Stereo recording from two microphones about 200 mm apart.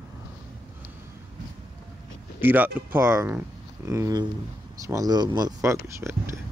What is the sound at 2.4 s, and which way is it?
Speech, 10° right (ahead or behind).